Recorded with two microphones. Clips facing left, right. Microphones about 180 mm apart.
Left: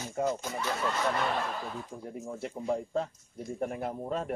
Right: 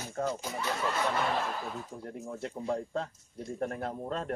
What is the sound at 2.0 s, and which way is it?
Speech, centre (ahead or behind).